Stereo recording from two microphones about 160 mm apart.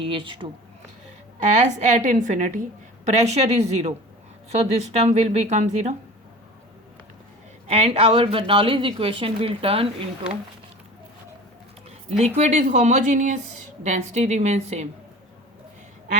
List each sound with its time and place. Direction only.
0.0 s a woman's voice: 35° right (ahead or behind)
1.4 s a woman's voice: 50° right (ahead or behind)
7.7 s a woman's voice: 40° right (ahead or behind)
12.2 s a woman's voice: 45° right (ahead or behind)